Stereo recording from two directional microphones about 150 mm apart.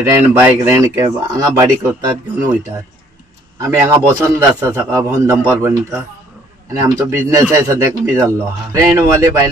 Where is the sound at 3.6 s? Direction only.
20° right (ahead or behind).